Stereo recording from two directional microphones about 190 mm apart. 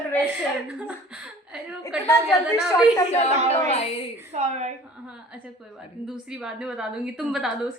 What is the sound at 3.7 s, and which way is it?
Speech, 35° left (ahead or behind).